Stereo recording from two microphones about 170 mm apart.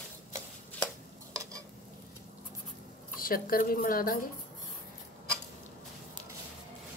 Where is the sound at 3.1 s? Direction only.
60° left (ahead or behind).